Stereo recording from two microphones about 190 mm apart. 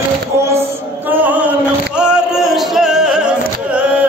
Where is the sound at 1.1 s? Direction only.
10° right (ahead or behind).